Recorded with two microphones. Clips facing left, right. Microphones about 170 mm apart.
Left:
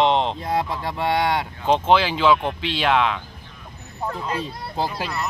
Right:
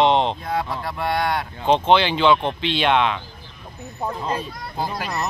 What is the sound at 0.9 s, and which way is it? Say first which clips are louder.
Speech: left 2 dB; 20° left (ahead or behind).